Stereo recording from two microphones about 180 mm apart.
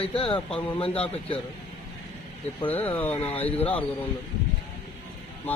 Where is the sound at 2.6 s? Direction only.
10° left (ahead or behind).